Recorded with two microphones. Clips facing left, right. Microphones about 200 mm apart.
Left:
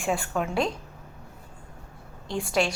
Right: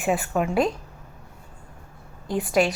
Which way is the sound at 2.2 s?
5° right (ahead or behind).